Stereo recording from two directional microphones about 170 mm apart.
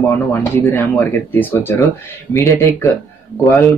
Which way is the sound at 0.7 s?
10° left (ahead or behind).